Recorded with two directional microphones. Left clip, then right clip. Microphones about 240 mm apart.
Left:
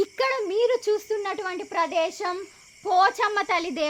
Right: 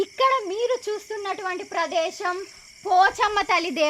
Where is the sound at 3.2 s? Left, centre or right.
Centre.